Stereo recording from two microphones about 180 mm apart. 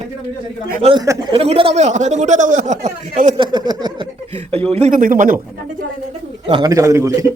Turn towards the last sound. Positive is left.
turn(degrees=-15)  # may be behind; listen again after turning